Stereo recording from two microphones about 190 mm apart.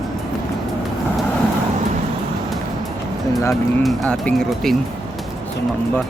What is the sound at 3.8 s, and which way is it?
Speech, 5° left (ahead or behind).